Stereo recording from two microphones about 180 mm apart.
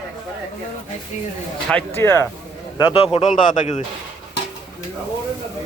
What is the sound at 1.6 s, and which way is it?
Speech, 10° left (ahead or behind).